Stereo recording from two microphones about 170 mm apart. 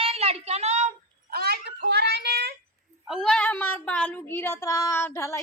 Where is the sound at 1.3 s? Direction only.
65° right (ahead or behind).